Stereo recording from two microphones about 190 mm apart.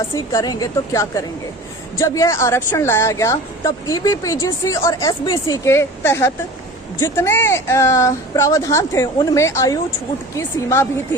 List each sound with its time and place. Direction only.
0.3 s a woman's voice: 20° left (ahead or behind)